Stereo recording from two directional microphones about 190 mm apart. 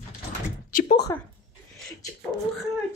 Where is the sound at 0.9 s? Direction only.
20° left (ahead or behind).